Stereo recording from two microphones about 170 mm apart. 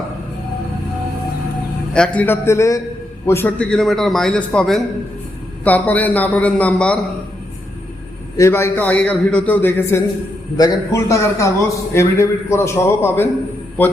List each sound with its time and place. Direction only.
1.9 s a man's voice: 5° left (ahead or behind)
8.4 s a man's voice: 15° left (ahead or behind)